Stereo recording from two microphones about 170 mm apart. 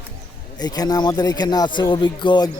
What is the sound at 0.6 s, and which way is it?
Speech, 25° left (ahead or behind).